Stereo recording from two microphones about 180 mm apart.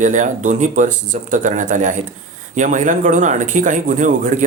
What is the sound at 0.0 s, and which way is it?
Speech, 45° right (ahead or behind).